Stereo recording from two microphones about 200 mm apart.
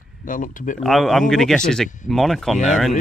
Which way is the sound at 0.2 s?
40° left (ahead or behind).